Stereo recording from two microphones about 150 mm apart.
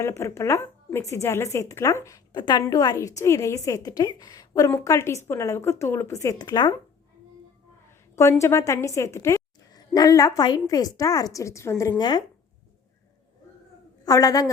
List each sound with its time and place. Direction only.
0.0 s a woman's voice: 20° left (ahead or behind)
8.1 s a woman's voice: 20° left (ahead or behind)
14.0 s a woman's voice: 25° left (ahead or behind)